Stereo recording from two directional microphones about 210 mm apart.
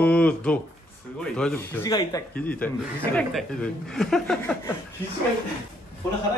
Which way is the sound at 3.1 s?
5° left (ahead or behind).